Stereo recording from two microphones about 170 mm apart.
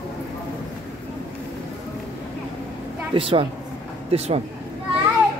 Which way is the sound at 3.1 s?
30° right (ahead or behind).